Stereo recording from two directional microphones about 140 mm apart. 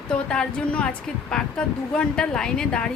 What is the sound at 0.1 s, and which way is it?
A woman's voice, 5° left (ahead or behind).